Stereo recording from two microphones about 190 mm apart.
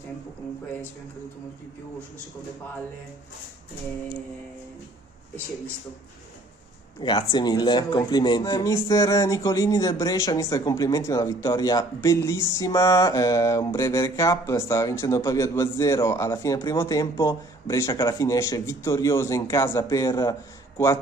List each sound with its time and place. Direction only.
7.0 s speech: 25° left (ahead or behind)
12.5 s mantra: 15° left (ahead or behind)